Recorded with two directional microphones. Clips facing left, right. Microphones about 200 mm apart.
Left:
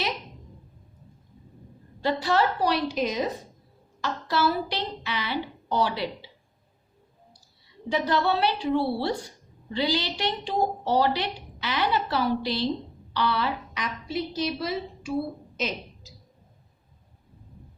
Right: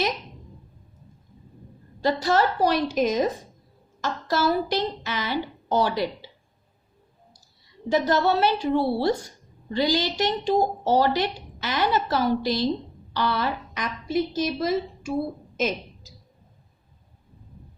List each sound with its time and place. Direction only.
2.2 s a woman's voice: 45° right (ahead or behind)
7.9 s a woman's voice: 45° right (ahead or behind)